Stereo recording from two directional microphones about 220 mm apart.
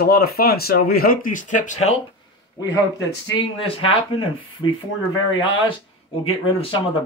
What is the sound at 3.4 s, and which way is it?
Speech, 25° left (ahead or behind).